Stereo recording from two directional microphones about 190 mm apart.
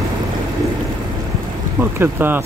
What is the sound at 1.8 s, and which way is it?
Speech, 10° right (ahead or behind).